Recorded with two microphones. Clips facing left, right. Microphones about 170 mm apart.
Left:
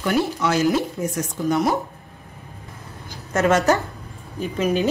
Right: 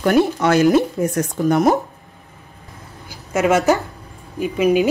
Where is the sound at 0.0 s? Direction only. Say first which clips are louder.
Right 6 dB; 55° right (ahead or behind).